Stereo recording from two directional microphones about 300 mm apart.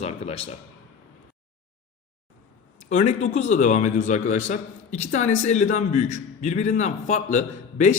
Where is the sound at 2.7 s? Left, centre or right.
Left.